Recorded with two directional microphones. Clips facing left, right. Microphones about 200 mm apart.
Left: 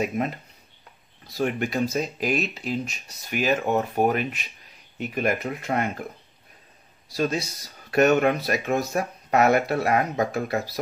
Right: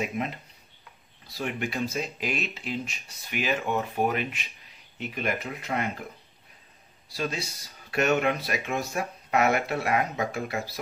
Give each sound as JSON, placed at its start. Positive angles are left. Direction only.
{"t": 1.3, "sound": "speech", "side_deg": 45}
{"t": 7.2, "sound": "speech", "side_deg": 45}